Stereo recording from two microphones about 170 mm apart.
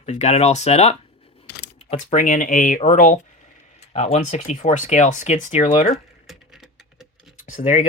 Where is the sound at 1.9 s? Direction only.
40° left (ahead or behind).